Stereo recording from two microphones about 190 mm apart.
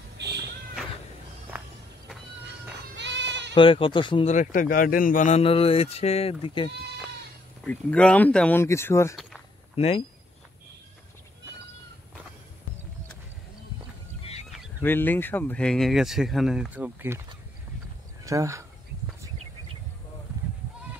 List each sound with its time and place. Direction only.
0.2 s a sound: 60° right (ahead or behind)
3.0 s sheep: 65° right (ahead or behind)
3.5 s speech: 25° left (ahead or behind)
4.3 s a man's voice: 45° left (ahead or behind); by 6.7 s 25° left (ahead or behind)
7.6 s speech: 5° left (ahead or behind)
9.1 s walk: centre (ahead or behind)
9.8 s a man's voice: 30° left (ahead or behind)
14.8 s speech: 10° left (ahead or behind); by 17.2 s 10° right (ahead or behind)
18.2 s speech: 15° right (ahead or behind)